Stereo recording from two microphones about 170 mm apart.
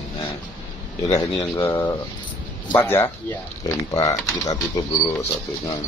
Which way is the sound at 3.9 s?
20° left (ahead or behind).